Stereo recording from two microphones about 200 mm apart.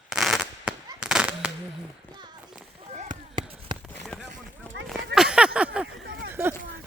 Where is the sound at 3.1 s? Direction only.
25° right (ahead or behind).